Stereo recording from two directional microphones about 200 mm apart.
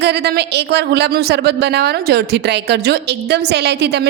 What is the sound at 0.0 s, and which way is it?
A woman's voice, 55° right (ahead or behind).